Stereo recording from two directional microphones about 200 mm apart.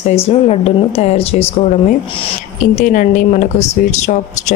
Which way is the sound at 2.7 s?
40° left (ahead or behind).